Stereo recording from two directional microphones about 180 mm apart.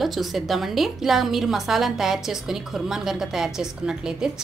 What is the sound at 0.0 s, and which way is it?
A woman's voice, centre (ahead or behind).